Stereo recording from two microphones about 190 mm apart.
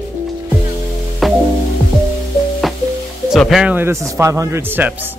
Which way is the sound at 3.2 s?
Centre (ahead or behind).